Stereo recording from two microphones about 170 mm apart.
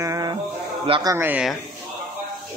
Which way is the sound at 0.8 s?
30° right (ahead or behind).